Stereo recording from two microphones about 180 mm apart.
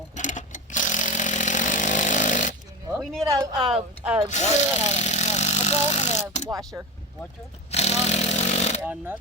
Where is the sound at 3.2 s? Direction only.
20° right (ahead or behind).